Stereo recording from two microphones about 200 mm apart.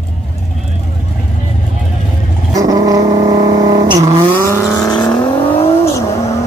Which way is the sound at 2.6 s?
15° right (ahead or behind).